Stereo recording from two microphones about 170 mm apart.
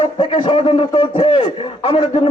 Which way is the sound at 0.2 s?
30° left (ahead or behind).